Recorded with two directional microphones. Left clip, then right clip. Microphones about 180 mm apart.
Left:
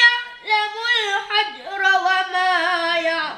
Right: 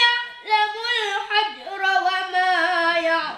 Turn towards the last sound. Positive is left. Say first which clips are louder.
# even
turn(degrees=20)  # may be behind; listen again after turning